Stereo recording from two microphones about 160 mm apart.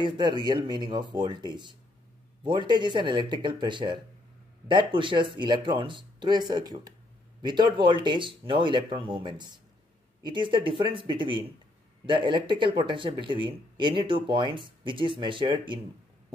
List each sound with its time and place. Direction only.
0.0 s speech: 30° right (ahead or behind)